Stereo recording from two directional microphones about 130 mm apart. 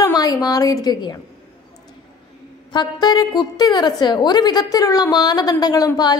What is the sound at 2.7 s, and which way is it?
A woman's voice, 30° left (ahead or behind).